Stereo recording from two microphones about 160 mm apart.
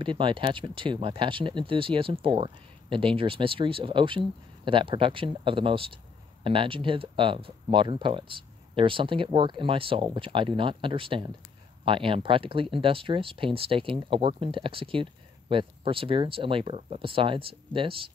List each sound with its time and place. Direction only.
0.0 s speech: 30° right (ahead or behind)